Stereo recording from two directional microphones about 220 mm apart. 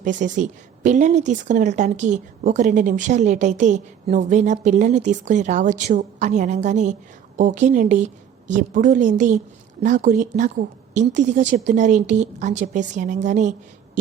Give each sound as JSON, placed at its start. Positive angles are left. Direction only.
{"t": 0.0, "sound": "a woman's voice", "side_deg": -35}